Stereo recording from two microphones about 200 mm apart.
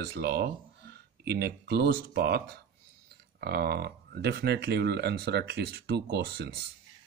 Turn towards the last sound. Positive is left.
turn(degrees=-55)  # may be behind; listen again after turning